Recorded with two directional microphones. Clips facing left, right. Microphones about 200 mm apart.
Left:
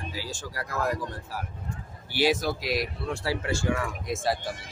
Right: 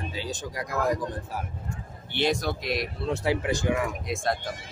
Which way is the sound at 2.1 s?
5° left (ahead or behind).